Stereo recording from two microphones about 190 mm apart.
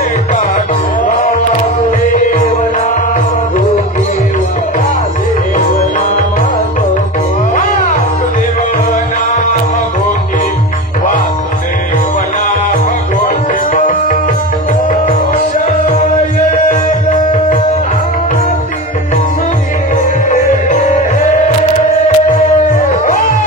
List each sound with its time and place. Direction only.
13.7 s music: 45° left (ahead or behind)
17.1 s music: 40° left (ahead or behind)
20.3 s music: 40° left (ahead or behind)